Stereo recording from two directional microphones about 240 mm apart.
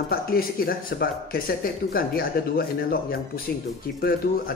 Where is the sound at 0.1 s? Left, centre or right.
Left.